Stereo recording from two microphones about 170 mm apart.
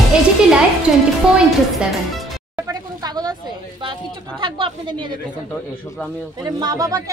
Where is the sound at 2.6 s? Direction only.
25° right (ahead or behind).